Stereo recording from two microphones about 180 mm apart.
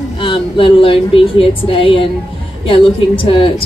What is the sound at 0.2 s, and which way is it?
Speech, 30° left (ahead or behind).